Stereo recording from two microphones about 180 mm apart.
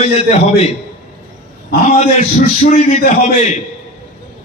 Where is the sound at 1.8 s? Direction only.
40° left (ahead or behind).